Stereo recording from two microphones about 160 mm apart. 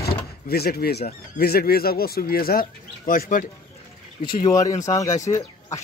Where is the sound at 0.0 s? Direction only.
75° left (ahead or behind).